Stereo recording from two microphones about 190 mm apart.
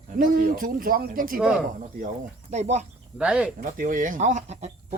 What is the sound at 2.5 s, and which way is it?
Speech, 35° right (ahead or behind).